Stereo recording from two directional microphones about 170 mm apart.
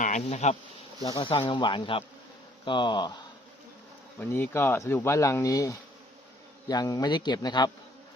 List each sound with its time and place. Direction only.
0.0 s bee: 45° left (ahead or behind)
1.0 s speech: 25° left (ahead or behind)
4.2 s speech: 15° left (ahead or behind)